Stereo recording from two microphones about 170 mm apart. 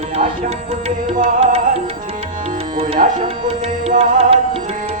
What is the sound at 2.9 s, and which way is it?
Speech, 50° right (ahead or behind).